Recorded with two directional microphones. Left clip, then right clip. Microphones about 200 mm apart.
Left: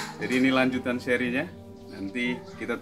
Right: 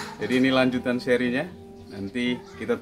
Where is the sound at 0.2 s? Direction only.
15° right (ahead or behind).